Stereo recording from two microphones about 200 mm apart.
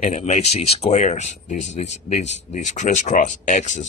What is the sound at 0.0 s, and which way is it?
Speech, 35° left (ahead or behind).